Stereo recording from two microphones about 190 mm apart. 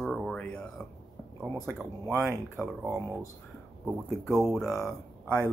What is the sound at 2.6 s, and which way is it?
Speech, centre (ahead or behind).